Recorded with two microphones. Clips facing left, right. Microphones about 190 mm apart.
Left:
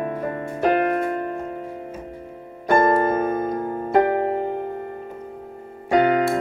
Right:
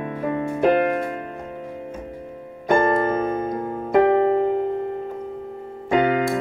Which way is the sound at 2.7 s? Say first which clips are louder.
Left 1 dB; 40° left (ahead or behind).